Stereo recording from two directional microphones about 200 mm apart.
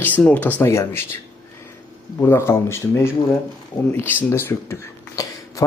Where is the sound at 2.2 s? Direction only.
10° left (ahead or behind).